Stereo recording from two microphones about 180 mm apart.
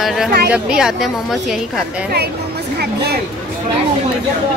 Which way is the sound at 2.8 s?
60° right (ahead or behind).